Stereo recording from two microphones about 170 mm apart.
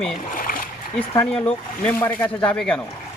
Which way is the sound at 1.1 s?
10° left (ahead or behind).